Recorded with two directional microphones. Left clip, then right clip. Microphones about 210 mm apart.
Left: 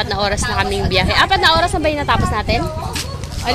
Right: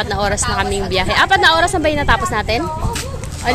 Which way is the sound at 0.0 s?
5° right (ahead or behind).